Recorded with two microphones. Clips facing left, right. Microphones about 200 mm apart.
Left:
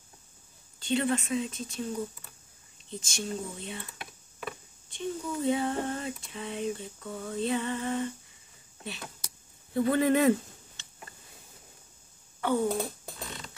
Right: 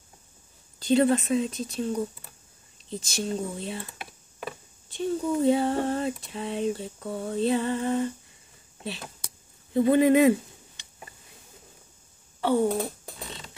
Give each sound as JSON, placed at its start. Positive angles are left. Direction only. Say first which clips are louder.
{"t": 0.7, "sound": "speech", "louder": "right 7 dB", "side_deg": -40}
{"t": 9.8, "sound": "speech", "louder": "right 5 dB", "side_deg": -20}
{"t": 10.8, "sound": "a sound", "louder": "even", "side_deg": -15}